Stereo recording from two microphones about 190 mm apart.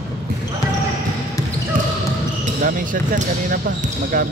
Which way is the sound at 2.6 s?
45° right (ahead or behind).